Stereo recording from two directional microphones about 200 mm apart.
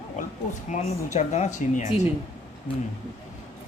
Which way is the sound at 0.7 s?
35° left (ahead or behind).